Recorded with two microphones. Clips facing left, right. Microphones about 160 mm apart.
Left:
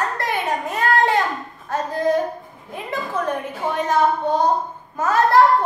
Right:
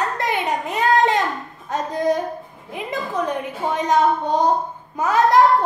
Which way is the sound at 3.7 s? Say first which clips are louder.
Right 1 dB; 20° right (ahead or behind).